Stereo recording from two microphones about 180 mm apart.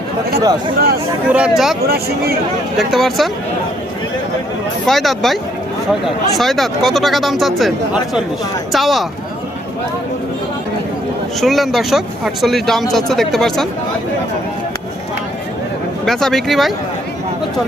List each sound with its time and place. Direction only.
1.3 s speech: 5° right (ahead or behind)
1.9 s speech: 60° right (ahead or behind)
2.7 s speech: centre (ahead or behind)
4.9 s speech: centre (ahead or behind)
8.7 s speech: centre (ahead or behind)
11.3 s speech: centre (ahead or behind)
16.0 s speech: centre (ahead or behind)